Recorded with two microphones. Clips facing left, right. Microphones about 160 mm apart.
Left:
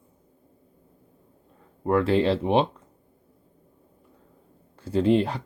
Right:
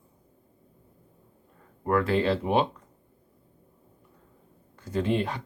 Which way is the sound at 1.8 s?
25° left (ahead or behind).